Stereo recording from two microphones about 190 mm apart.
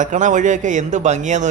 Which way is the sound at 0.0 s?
40° right (ahead or behind).